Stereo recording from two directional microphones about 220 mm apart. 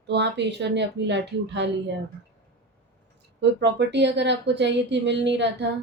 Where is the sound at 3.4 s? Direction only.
50° right (ahead or behind).